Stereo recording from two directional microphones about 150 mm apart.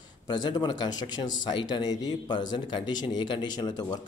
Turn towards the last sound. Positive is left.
turn(degrees=25)  # may be behind; listen again after turning